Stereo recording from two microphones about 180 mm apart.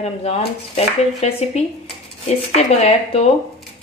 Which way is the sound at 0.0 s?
35° left (ahead or behind).